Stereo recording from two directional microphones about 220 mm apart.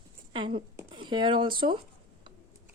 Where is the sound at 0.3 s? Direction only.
20° right (ahead or behind).